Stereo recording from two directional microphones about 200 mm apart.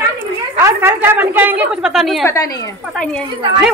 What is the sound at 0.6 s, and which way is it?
A woman's voice, 10° right (ahead or behind).